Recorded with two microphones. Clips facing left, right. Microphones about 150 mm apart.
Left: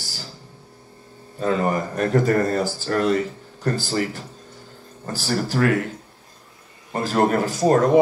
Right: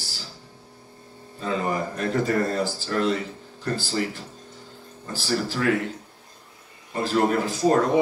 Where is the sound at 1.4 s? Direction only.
50° left (ahead or behind).